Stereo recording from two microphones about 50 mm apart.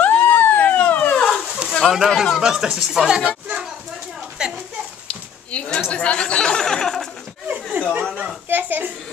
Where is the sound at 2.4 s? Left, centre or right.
Centre.